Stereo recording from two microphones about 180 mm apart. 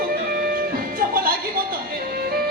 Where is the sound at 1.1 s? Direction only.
55° right (ahead or behind).